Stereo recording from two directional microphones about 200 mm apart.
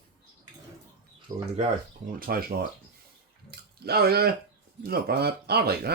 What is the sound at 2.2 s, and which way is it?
Speech, 45° right (ahead or behind).